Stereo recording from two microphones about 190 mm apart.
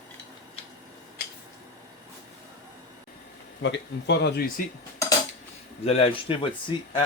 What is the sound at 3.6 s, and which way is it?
Speech, 70° left (ahead or behind).